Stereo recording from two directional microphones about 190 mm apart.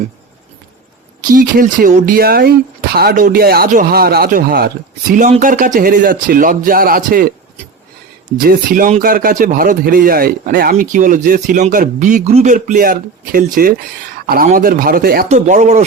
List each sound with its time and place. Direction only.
1.3 s speech: 50° right (ahead or behind)
8.4 s speech: 45° right (ahead or behind)
15.3 s speech: 40° right (ahead or behind)